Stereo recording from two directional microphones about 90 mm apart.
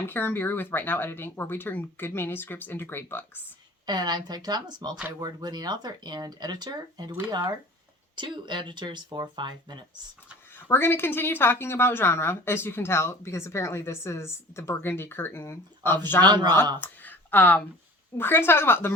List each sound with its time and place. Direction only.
0.1 s a woman's voice: 20° left (ahead or behind)
3.8 s speech: 50° right (ahead or behind)
10.7 s a woman's voice: 25° left (ahead or behind)
16.2 s speech: 55° right (ahead or behind)
16.8 s a sound: 20° left (ahead or behind)
18.2 s a woman's voice: 25° left (ahead or behind)